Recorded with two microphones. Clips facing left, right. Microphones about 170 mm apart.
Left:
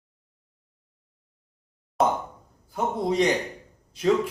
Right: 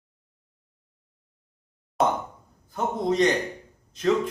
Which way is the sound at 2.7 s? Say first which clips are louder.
Even; 10° left (ahead or behind).